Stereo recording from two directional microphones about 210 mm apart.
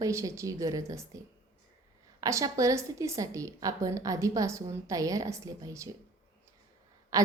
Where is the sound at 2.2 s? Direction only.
15° right (ahead or behind).